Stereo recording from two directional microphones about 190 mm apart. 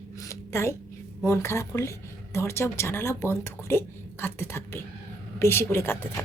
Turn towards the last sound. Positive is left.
turn(degrees=10)  # may be behind; listen again after turning